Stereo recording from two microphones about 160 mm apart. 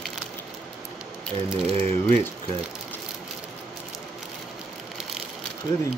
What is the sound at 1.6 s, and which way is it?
Speech, 40° right (ahead or behind).